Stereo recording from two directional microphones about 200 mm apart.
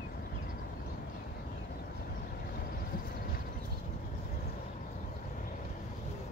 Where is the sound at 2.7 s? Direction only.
45° left (ahead or behind).